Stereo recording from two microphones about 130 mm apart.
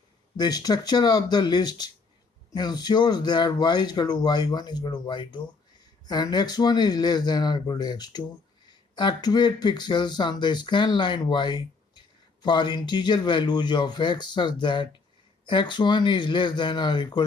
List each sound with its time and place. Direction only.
0.4 s speech: 30° left (ahead or behind)